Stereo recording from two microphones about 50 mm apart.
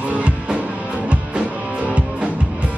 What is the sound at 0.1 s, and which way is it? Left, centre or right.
Music, right.